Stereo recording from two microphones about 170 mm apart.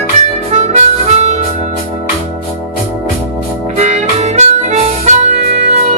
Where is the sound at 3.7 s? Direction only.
40° right (ahead or behind).